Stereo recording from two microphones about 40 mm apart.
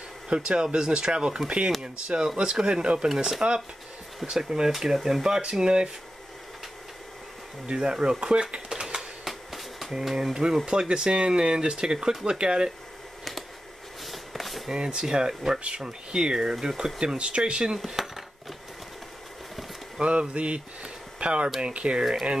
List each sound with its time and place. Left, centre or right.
0.3 s speech: right
4.3 s speech: centre
7.6 s speech: right
9.2 s a sound: centre
9.9 s speech: centre
14.0 s a sound: centre
14.7 s speech: right
17.7 s cutlery: centre
20.0 s speech: right